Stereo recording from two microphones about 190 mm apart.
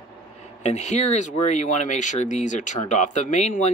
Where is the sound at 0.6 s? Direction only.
35° left (ahead or behind).